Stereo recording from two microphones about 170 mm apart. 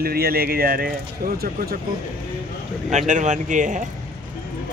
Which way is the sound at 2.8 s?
45° right (ahead or behind).